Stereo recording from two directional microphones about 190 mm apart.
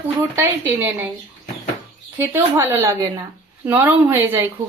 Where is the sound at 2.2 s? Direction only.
10° right (ahead or behind).